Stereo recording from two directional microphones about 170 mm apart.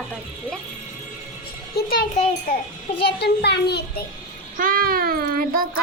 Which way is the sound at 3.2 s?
75° left (ahead or behind).